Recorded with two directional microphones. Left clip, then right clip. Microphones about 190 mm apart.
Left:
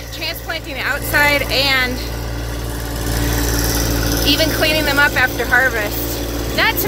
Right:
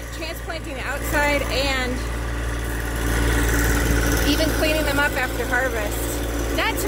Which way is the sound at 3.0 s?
30° left (ahead or behind).